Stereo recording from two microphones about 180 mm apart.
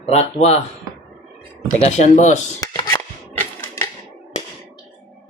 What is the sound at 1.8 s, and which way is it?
Speech, 40° left (ahead or behind).